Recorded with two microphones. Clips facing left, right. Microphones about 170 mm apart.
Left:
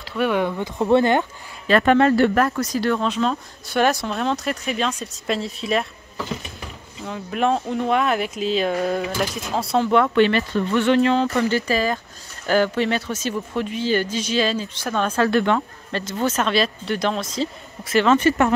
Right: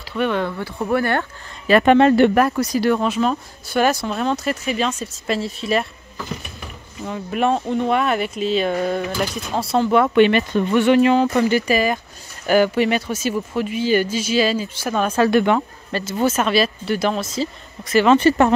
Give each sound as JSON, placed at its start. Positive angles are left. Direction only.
{"t": 0.1, "sound": "speech", "side_deg": 5}
{"t": 1.7, "sound": "speech", "side_deg": -15}
{"t": 7.1, "sound": "speech", "side_deg": 0}
{"t": 10.0, "sound": "speech", "side_deg": -15}
{"t": 18.1, "sound": "speech", "side_deg": -35}